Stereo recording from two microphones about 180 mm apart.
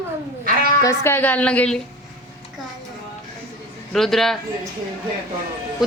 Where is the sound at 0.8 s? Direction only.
15° left (ahead or behind).